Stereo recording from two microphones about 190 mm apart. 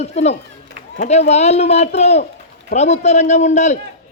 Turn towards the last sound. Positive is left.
turn(degrees=35)  # may be behind; listen again after turning